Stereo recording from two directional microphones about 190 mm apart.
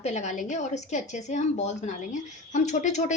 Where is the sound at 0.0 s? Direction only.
40° left (ahead or behind).